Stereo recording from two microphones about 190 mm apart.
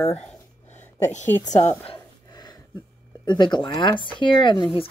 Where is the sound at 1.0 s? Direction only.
40° left (ahead or behind).